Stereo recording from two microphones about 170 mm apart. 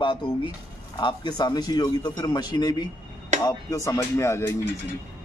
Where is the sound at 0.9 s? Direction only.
25° left (ahead or behind).